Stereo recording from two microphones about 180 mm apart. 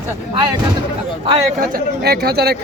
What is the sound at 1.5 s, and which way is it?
Speech, 60° right (ahead or behind).